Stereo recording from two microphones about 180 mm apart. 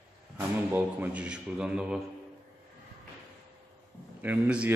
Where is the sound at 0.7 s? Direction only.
10° right (ahead or behind).